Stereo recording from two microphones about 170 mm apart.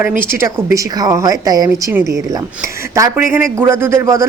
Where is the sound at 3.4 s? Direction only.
15° right (ahead or behind).